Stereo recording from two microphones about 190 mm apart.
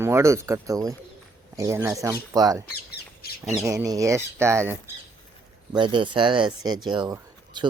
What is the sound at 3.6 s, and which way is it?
Speech, 15° right (ahead or behind).